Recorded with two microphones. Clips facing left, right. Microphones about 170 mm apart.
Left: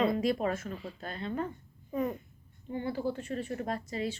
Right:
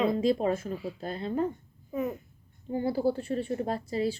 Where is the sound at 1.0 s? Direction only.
35° right (ahead or behind).